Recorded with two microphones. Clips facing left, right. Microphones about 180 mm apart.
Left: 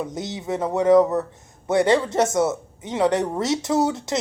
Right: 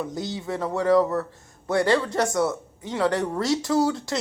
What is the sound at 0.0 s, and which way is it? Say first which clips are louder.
A woman's voice: left 1 dB; 20° left (ahead or behind).